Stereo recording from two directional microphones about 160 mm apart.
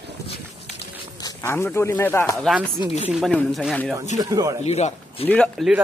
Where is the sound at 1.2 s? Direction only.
15° left (ahead or behind).